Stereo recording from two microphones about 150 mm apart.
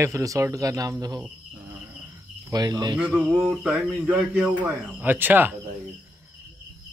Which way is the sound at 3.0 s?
Centre (ahead or behind).